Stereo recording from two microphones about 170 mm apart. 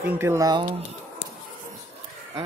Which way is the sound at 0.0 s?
10° right (ahead or behind).